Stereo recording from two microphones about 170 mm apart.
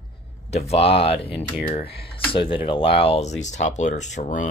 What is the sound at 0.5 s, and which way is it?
Speech, 40° left (ahead or behind).